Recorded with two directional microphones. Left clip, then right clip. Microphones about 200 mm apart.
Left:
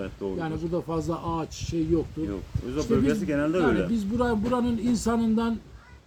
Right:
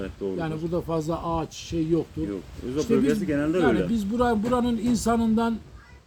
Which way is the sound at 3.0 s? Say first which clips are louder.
Right 1 dB; 10° left (ahead or behind).